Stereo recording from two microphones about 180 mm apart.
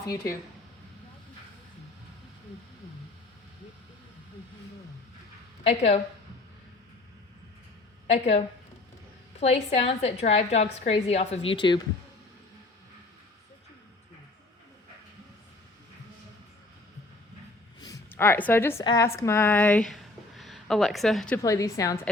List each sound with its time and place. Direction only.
5.6 s a woman's voice: 35° left (ahead or behind)
8.1 s a woman's voice: 35° left (ahead or behind)
17.7 s a sound: 20° left (ahead or behind)
18.9 s speech: 15° left (ahead or behind); by 21.3 s centre (ahead or behind)
21.3 s a woman's voice: 15° left (ahead or behind)